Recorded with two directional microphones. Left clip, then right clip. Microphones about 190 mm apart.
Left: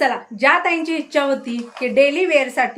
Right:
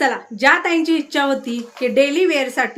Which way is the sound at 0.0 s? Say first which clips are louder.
Right 1 dB; 20° right (ahead or behind).